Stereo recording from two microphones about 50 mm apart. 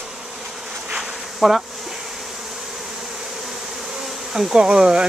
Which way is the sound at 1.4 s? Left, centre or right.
Centre.